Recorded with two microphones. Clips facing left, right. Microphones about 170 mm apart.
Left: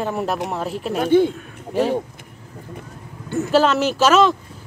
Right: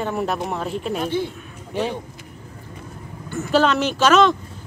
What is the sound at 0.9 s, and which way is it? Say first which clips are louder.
Speech: left 10 dB; 55° left (ahead or behind).